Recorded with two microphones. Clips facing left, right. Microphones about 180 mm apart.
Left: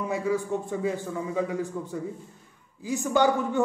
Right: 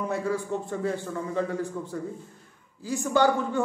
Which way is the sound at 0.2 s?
15° left (ahead or behind).